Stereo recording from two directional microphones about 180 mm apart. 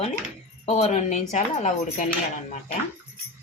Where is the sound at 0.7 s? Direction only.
40° left (ahead or behind).